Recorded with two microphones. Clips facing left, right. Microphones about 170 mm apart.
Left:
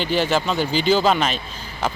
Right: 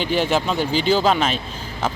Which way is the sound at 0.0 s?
Centre (ahead or behind).